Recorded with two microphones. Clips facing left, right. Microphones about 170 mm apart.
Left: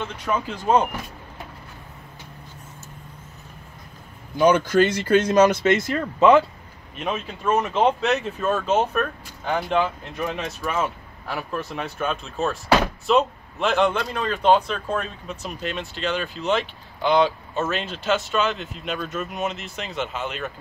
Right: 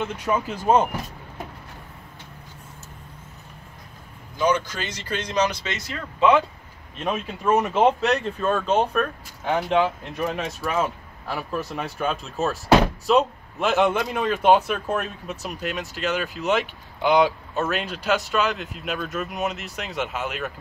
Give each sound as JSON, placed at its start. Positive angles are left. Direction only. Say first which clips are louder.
{"t": 0.0, "sound": "speech", "louder": "right 1 dB", "side_deg": -10}
{"t": 4.4, "sound": "speech", "louder": "left 6 dB", "side_deg": 55}
{"t": 7.1, "sound": "speech", "louder": "right 1 dB", "side_deg": -10}
{"t": 13.9, "sound": "speech", "louder": "right 2 dB", "side_deg": -15}